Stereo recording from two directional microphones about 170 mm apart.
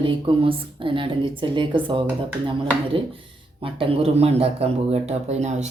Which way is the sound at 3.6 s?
35° right (ahead or behind).